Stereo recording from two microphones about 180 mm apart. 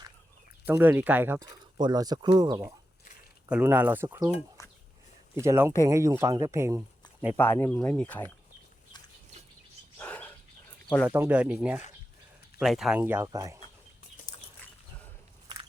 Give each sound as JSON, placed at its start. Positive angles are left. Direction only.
{"t": 0.6, "sound": "speech", "side_deg": -10}
{"t": 1.8, "sound": "speech", "side_deg": -20}
{"t": 3.5, "sound": "speech", "side_deg": -10}
{"t": 5.4, "sound": "speech", "side_deg": -15}
{"t": 7.3, "sound": "speech", "side_deg": 10}
{"t": 10.0, "sound": "dog", "side_deg": 10}
{"t": 11.1, "sound": "speech", "side_deg": -10}
{"t": 13.0, "sound": "speech", "side_deg": -15}